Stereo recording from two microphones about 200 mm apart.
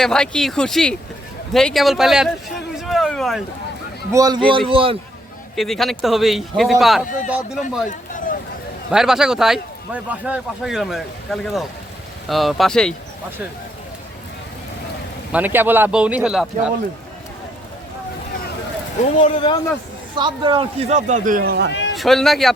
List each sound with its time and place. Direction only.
0.0 s speech: 5° left (ahead or behind)
2.8 s a sound: centre (ahead or behind)
4.1 s speech: 20° right (ahead or behind)
5.5 s speech: centre (ahead or behind)
7.9 s a sound: 40° left (ahead or behind)
8.9 s speech: 5° right (ahead or behind)
15.3 s speech: 10° right (ahead or behind)
19.2 s speech: 25° left (ahead or behind)
20.1 s a man's voice: 25° right (ahead or behind); by 21.7 s 50° right (ahead or behind)
21.7 s a sound: 60° left (ahead or behind)
21.9 s speech: centre (ahead or behind)